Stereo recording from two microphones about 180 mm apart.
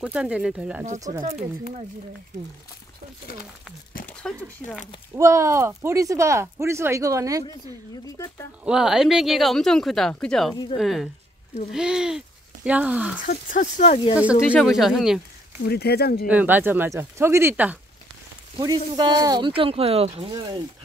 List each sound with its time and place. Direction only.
0.0 s speech: 5° right (ahead or behind)
4.0 s a sound: 5° left (ahead or behind)
5.1 s speech: 15° right (ahead or behind)
8.6 s speech: 5° right (ahead or behind)
10.5 s speech: 25° left (ahead or behind)
10.8 s speech: centre (ahead or behind)
13.2 s speech: 50° left (ahead or behind)
14.5 s speech: centre (ahead or behind)
15.6 s speech: 60° left (ahead or behind)
16.3 s speech: 10° right (ahead or behind)
18.6 s speech: 20° right (ahead or behind)